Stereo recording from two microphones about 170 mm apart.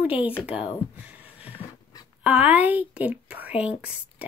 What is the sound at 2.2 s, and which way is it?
Speech, 10° right (ahead or behind).